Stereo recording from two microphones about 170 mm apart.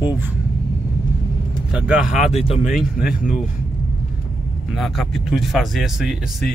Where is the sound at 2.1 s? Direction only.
35° left (ahead or behind).